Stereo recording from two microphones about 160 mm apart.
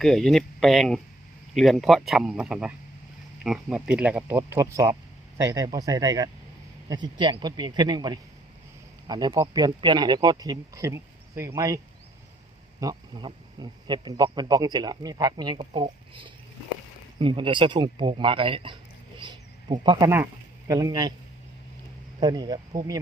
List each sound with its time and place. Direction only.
0.0 s speech: centre (ahead or behind); by 11.8 s 20° right (ahead or behind)
12.8 s speech: 25° right (ahead or behind)
19.2 s a sound: 30° right (ahead or behind)
19.8 s speech: 30° right (ahead or behind)
22.2 s speech: 25° right (ahead or behind)